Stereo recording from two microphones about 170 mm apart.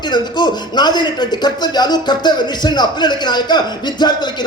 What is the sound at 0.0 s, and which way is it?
Speech, 25° left (ahead or behind).